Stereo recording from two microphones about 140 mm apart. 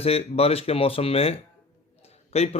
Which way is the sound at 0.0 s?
45° left (ahead or behind).